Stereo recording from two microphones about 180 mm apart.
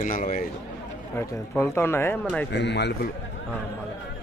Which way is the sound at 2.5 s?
70° left (ahead or behind).